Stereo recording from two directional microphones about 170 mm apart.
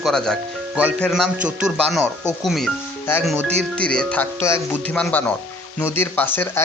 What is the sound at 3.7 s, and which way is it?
Speech, 5° left (ahead or behind).